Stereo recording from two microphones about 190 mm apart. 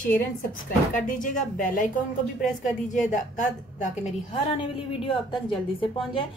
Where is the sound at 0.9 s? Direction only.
45° left (ahead or behind).